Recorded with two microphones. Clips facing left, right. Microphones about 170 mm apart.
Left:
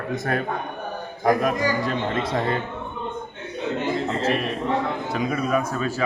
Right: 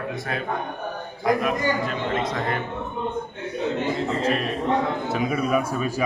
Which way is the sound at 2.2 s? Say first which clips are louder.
Left 2 dB; 30° left (ahead or behind).